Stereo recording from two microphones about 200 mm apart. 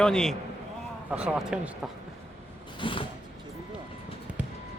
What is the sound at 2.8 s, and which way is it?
Creak, 25° left (ahead or behind).